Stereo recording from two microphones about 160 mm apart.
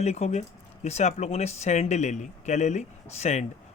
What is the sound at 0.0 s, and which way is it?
Speech, 45° left (ahead or behind).